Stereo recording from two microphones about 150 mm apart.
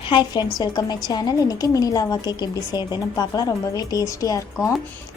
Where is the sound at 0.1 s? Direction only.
30° left (ahead or behind).